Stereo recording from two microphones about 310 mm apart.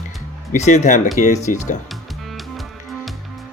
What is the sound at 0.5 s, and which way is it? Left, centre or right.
Speech, left.